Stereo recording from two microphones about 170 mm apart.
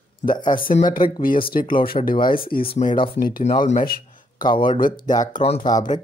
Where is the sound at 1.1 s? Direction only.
55° left (ahead or behind).